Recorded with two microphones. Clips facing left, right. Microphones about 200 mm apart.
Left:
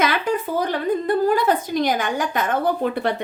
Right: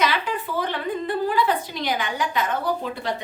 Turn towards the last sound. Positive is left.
turn(degrees=60)  # may be behind; listen again after turning